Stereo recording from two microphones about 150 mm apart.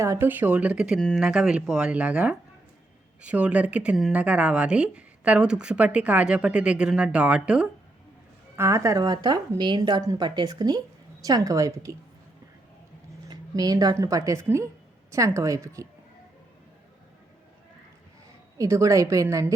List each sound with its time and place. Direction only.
0.0 s speech: 15° right (ahead or behind)
8.5 s a woman's voice: 20° right (ahead or behind)
13.2 s a woman's voice: 25° right (ahead or behind)
18.5 s a woman's voice: 20° right (ahead or behind)